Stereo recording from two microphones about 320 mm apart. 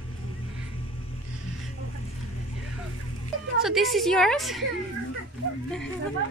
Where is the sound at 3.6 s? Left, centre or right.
Centre.